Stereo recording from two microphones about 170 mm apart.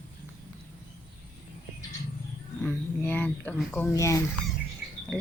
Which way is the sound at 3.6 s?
Centre (ahead or behind).